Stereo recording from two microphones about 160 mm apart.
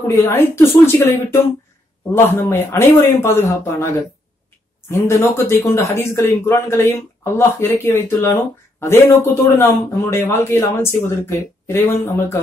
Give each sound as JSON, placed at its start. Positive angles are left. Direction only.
{"t": 0.0, "sound": "speech", "side_deg": 15}